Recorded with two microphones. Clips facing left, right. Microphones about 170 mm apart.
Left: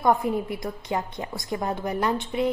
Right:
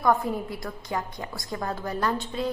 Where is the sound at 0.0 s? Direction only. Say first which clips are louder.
Left 2 dB; 20° left (ahead or behind).